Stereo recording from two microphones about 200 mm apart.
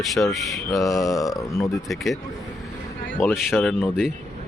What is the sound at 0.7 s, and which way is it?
Speech, 15° left (ahead or behind).